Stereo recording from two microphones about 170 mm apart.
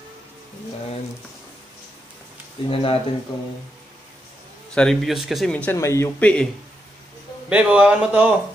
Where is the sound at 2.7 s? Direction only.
35° left (ahead or behind).